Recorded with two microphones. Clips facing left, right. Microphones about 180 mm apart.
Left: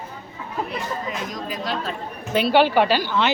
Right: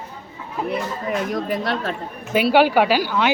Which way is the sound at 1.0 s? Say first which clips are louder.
Right 6 dB; 60° right (ahead or behind).